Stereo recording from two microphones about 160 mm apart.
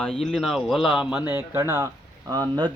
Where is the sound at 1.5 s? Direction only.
20° right (ahead or behind).